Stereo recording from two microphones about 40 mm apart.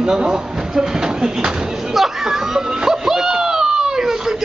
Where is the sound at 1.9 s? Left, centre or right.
Centre.